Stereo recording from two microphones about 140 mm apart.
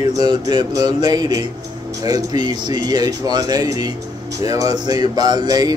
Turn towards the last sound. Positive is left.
turn(degrees=-30)  # may be behind; listen again after turning